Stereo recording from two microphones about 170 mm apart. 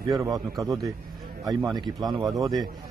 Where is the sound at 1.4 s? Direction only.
25° right (ahead or behind).